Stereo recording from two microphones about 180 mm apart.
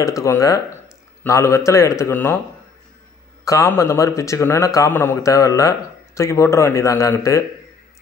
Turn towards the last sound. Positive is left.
turn(degrees=15)  # may be behind; listen again after turning